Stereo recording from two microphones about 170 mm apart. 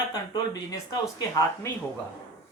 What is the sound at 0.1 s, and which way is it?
Speech, 25° left (ahead or behind).